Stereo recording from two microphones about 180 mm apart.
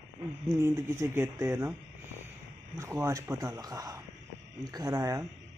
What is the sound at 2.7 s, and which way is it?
A man's voice, 15° right (ahead or behind).